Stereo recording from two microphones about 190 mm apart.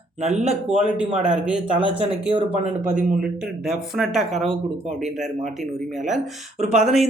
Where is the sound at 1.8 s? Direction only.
25° right (ahead or behind).